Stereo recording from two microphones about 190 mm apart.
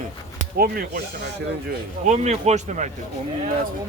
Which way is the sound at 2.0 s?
35° right (ahead or behind).